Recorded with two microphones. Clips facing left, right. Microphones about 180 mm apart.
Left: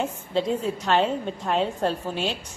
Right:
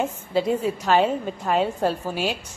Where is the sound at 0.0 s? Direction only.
5° right (ahead or behind).